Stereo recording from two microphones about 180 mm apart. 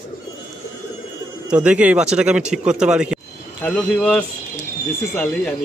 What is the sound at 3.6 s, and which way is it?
Speech, 5° left (ahead or behind).